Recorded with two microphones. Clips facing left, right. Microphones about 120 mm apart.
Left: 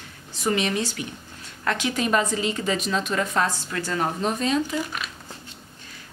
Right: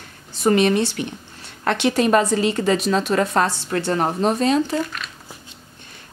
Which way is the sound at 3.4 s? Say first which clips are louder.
Right 3 dB; 70° right (ahead or behind).